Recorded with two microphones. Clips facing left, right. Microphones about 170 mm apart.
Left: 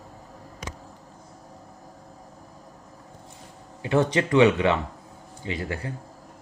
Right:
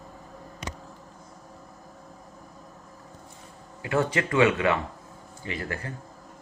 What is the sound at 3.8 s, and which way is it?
Speech, 20° left (ahead or behind).